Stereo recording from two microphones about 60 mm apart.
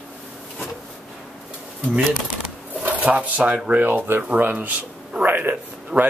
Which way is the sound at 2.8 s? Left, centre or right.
Right.